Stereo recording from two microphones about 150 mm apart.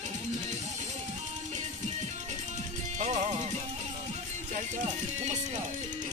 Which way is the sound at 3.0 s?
50° right (ahead or behind).